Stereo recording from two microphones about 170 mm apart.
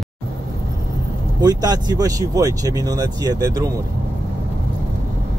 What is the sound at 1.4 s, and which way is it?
Speech, 25° right (ahead or behind).